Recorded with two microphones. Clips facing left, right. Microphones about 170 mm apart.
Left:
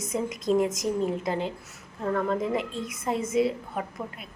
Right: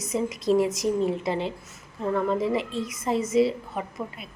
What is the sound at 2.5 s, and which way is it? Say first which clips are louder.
Speech: right 2 dB; 50° left (ahead or behind).